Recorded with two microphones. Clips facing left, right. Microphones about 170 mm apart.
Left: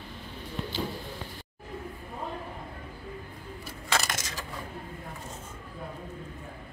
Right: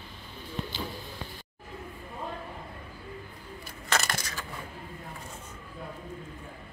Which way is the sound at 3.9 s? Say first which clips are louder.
Even; 20° left (ahead or behind).